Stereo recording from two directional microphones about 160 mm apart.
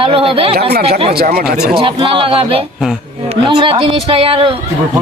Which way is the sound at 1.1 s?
70° right (ahead or behind).